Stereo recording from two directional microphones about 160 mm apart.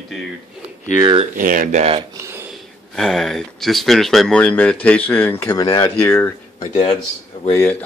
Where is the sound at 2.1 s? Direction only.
15° right (ahead or behind).